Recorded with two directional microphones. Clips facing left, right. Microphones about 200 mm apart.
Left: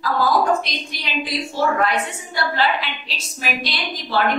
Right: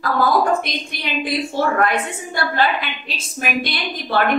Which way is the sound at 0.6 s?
55° right (ahead or behind).